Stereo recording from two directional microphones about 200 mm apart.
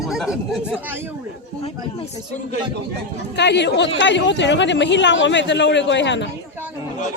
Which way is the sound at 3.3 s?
60° left (ahead or behind).